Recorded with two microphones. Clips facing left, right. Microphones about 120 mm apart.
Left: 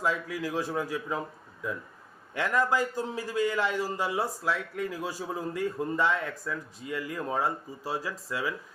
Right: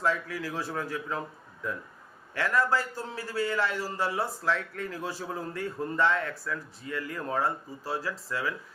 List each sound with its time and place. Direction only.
0.0 s a man's voice: 15° left (ahead or behind)
2.3 s a man's voice: 15° left (ahead or behind)